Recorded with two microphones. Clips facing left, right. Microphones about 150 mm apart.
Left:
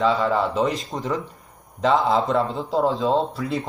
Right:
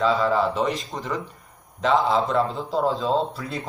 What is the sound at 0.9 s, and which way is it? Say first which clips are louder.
Speech: left 3 dB; centre (ahead or behind).